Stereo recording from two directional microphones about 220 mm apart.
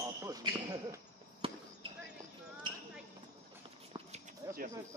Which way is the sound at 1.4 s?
25° right (ahead or behind).